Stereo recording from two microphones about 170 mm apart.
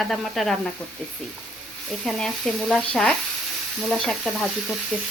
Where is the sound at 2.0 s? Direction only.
5° left (ahead or behind).